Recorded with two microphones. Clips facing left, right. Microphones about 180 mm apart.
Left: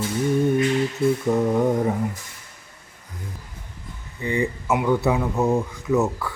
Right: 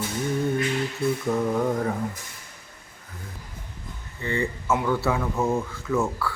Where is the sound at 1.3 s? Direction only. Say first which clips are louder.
Left 3 dB; 15° left (ahead or behind).